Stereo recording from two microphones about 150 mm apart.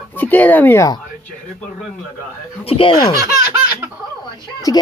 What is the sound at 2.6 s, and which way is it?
Speech, 35° left (ahead or behind).